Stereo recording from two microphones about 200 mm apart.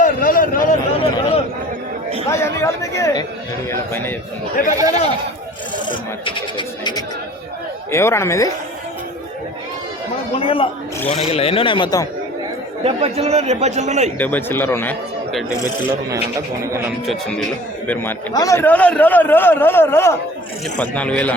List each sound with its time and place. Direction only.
0.0 s a sound: 45° left (ahead or behind)
2.3 s a man's voice: 15° left (ahead or behind)
4.7 s speech: 15° right (ahead or behind)
5.9 s a man's voice: 25° left (ahead or behind)
10.3 s a man's voice: 25° left (ahead or behind)
12.8 s a man's voice: 30° right (ahead or behind)
14.2 s a man's voice: 10° left (ahead or behind)
17.8 s a man's voice: 10° left (ahead or behind)